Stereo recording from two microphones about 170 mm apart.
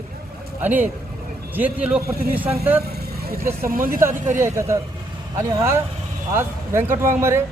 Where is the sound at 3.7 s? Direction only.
55° right (ahead or behind).